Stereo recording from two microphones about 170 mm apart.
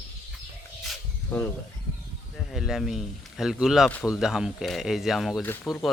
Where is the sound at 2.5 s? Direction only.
Centre (ahead or behind).